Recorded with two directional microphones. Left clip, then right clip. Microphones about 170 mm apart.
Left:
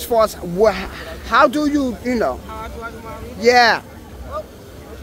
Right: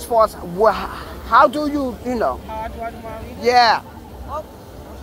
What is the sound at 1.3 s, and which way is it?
Speech, 60° left (ahead or behind).